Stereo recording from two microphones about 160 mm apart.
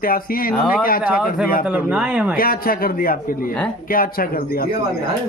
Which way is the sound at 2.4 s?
65° left (ahead or behind).